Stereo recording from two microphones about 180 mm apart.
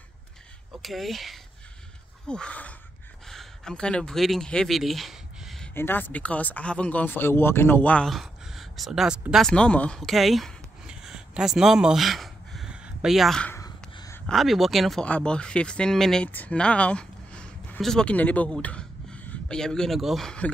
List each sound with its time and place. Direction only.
0.8 s speech: centre (ahead or behind)
5.8 s speech: 10° left (ahead or behind)
13.6 s a sound: 20° left (ahead or behind)
14.2 s speech: centre (ahead or behind)